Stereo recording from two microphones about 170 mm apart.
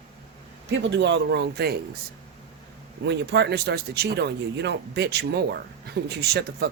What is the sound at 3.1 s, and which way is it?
Speech, 80° right.